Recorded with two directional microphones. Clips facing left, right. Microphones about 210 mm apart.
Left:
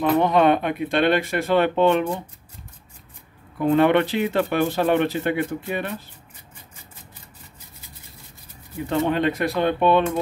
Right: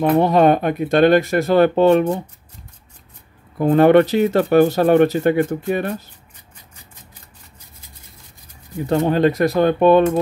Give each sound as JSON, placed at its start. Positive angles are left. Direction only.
{"t": 0.2, "sound": "speech", "side_deg": -40}
{"t": 3.5, "sound": "speech", "side_deg": -45}
{"t": 8.8, "sound": "speech", "side_deg": -40}